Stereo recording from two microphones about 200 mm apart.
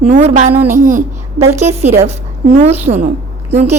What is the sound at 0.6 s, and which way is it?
Speech, 10° right (ahead or behind).